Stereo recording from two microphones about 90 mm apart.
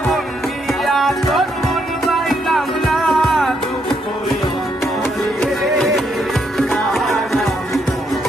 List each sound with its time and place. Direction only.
0.7 s music: centre (ahead or behind)
6.6 s music: centre (ahead or behind)